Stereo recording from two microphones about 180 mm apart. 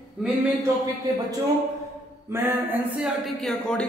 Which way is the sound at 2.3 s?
10° right (ahead or behind).